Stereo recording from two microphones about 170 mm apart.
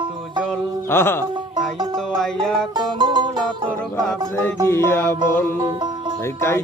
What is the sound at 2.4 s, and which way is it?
Music, centre (ahead or behind).